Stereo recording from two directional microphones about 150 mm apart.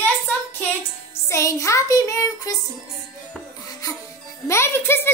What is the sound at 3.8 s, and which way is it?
Music, 25° left (ahead or behind).